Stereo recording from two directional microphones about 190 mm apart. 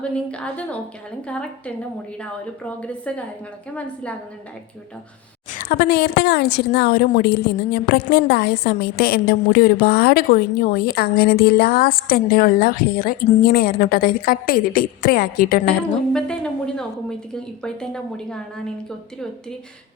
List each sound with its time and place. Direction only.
0.1 s a woman's voice: 5° left (ahead or behind)
2.8 s a woman's voice: 5° left (ahead or behind)
5.5 s a woman's voice: 50° left (ahead or behind)
16.1 s a woman's voice: 5° left (ahead or behind)